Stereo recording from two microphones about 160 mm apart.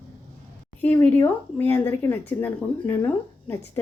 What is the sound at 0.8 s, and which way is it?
Speech, 10° left (ahead or behind).